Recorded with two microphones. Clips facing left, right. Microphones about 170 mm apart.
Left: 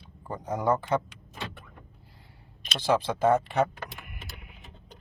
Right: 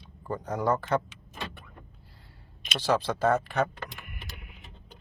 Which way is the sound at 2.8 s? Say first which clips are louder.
Left 1 dB; 10° left (ahead or behind).